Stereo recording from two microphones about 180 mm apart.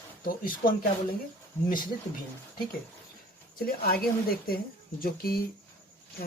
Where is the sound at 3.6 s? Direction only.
55° left (ahead or behind).